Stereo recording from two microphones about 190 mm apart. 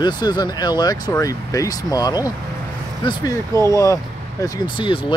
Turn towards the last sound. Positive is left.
turn(degrees=25)  # may be behind; listen again after turning